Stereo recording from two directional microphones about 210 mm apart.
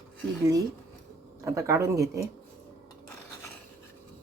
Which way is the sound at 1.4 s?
15° right (ahead or behind).